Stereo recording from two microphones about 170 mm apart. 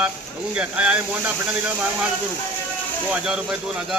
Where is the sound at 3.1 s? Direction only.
5° right (ahead or behind).